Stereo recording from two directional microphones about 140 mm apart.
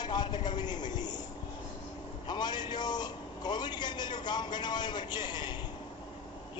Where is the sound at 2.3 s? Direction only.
30° left (ahead or behind).